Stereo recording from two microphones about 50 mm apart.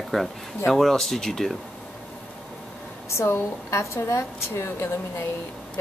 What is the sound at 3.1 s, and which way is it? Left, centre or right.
A woman's voice, left.